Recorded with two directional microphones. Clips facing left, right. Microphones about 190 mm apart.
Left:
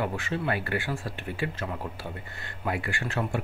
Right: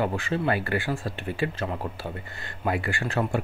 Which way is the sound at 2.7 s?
35° right (ahead or behind).